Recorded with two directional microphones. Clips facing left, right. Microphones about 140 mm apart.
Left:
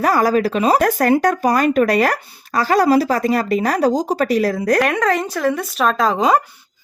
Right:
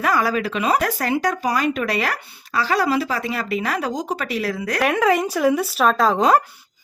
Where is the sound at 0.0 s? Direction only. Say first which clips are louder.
Left 5 dB; 40° left (ahead or behind).